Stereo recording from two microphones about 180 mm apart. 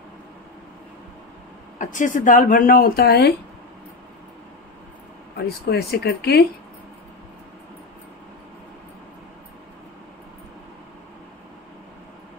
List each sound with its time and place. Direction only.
1.8 s speech: 45° left (ahead or behind); by 3.3 s 65° left (ahead or behind)
5.7 s speech: 60° left (ahead or behind)